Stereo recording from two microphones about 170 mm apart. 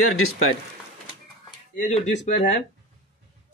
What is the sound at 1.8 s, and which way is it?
Speech, 40° left (ahead or behind).